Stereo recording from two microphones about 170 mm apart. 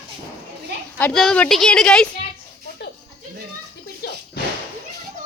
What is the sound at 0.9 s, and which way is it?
A woman's voice, 10° left (ahead or behind).